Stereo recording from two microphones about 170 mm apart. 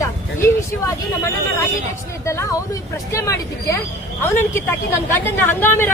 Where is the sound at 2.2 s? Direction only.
15° left (ahead or behind).